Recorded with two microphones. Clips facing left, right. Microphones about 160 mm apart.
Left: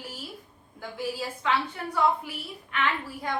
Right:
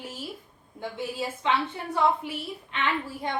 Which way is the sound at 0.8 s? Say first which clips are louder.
Right 1 dB; 25° right (ahead or behind).